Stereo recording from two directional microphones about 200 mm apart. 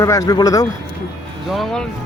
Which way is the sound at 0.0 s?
15° left (ahead or behind).